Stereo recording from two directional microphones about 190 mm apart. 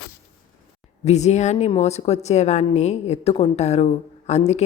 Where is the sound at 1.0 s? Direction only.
35° left (ahead or behind).